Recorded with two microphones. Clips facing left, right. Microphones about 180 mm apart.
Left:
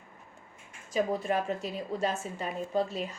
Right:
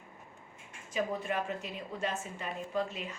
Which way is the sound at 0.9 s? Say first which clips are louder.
Left 5 dB; 40° left (ahead or behind).